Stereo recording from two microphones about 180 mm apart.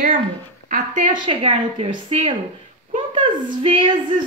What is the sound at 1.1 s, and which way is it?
A woman's voice, 30° right (ahead or behind).